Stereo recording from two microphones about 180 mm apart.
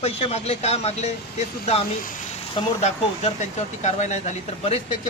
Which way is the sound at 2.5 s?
35° left (ahead or behind).